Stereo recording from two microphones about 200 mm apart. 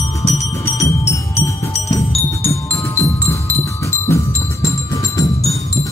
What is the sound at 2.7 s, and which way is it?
Music, 15° left (ahead or behind).